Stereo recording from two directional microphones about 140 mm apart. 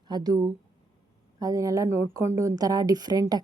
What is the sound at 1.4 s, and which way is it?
Speech, 25° right (ahead or behind).